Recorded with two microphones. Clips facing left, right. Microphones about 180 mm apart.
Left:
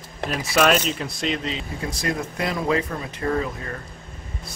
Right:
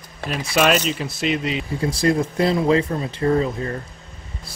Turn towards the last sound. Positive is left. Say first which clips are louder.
# right 5 dB
turn(degrees=-30)  # may be behind; listen again after turning